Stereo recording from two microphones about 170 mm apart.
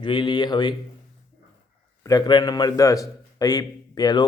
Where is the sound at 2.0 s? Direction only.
20° left (ahead or behind).